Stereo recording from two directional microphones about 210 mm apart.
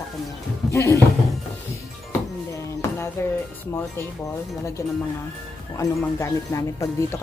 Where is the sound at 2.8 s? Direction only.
10° left (ahead or behind).